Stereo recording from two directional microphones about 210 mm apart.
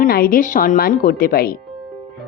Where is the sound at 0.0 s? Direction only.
45° left (ahead or behind).